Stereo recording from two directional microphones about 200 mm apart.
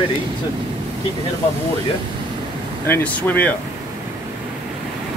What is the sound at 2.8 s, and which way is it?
Speech, 10° left (ahead or behind).